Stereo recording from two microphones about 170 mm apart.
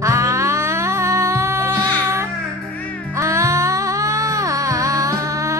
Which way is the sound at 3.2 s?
15° right (ahead or behind).